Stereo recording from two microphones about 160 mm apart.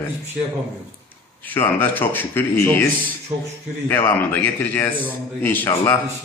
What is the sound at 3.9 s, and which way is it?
Speech, 15° left (ahead or behind).